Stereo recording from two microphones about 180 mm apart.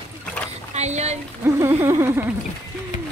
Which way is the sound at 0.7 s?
40° right (ahead or behind).